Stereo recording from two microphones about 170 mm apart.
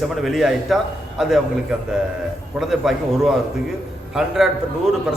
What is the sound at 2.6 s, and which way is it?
A man's voice, centre (ahead or behind).